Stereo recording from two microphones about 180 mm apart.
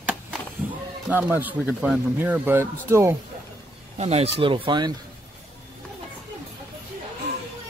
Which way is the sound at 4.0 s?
35° right (ahead or behind).